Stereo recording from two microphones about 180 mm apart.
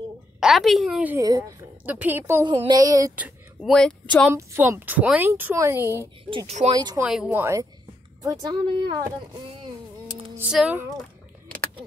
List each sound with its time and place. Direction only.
0.4 s a woman's voice: centre (ahead or behind)
1.1 s speech: 20° right (ahead or behind)
1.9 s a woman's voice: 10° right (ahead or behind)
2.4 s speech: 25° right (ahead or behind)
3.2 s a sound: 10° right (ahead or behind)
3.7 s a woman's voice: 5° left (ahead or behind)
4.3 s a woman's voice: 15° right (ahead or behind)
6.3 s speech: 35° right (ahead or behind)
6.7 s speech: 20° right (ahead or behind)
7.0 s a woman's voice: 5° right (ahead or behind); by 9.0 s 25° right (ahead or behind)
10.5 s a woman's voice: 5° right (ahead or behind)